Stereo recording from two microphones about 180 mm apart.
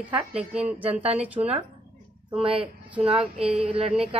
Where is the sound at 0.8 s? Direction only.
35° right (ahead or behind).